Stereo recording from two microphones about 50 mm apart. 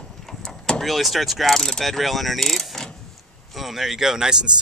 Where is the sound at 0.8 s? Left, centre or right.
Centre.